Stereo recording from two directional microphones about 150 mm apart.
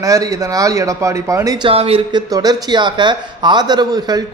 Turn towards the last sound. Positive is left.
turn(degrees=-25)  # may be behind; listen again after turning